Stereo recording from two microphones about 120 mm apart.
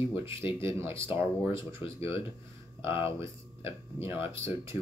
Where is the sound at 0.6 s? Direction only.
25° right (ahead or behind).